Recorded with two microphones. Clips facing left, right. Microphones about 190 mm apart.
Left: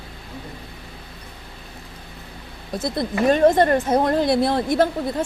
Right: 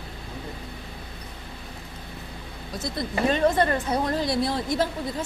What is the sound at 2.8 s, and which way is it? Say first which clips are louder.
Speech: left 5 dB; 50° left (ahead or behind).